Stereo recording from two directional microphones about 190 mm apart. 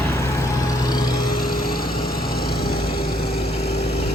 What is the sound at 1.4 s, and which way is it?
Light engine, 50° left (ahead or behind).